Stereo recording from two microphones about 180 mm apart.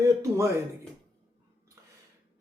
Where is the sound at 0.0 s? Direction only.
15° right (ahead or behind).